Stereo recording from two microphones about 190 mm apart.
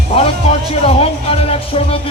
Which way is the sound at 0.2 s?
30° left (ahead or behind).